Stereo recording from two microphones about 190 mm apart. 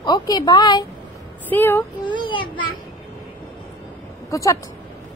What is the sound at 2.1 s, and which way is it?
Speech, 25° left (ahead or behind).